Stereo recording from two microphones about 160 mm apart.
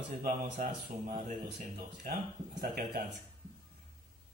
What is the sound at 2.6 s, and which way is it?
Speech, 85° right.